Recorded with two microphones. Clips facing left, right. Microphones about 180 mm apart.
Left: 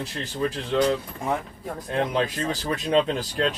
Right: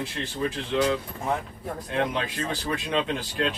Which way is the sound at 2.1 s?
40° left (ahead or behind).